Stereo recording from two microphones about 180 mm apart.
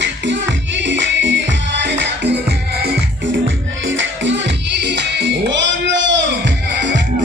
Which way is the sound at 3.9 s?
90° right.